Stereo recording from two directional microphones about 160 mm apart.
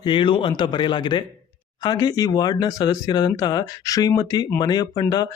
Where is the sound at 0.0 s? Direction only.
30° left (ahead or behind).